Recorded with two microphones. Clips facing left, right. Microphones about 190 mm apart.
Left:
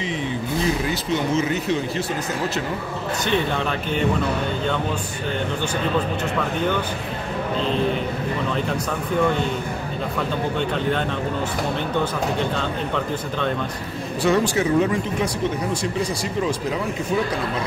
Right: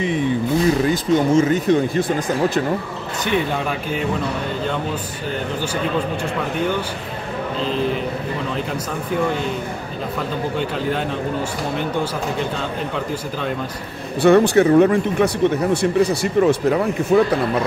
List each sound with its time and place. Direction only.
0.8 s speech: 50° right (ahead or behind)
14.2 s speech: 60° right (ahead or behind)